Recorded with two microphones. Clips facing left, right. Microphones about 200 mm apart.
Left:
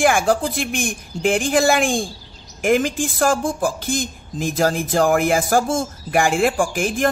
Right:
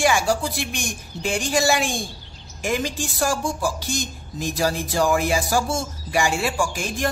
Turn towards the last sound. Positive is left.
turn(degrees=55)  # may be behind; listen again after turning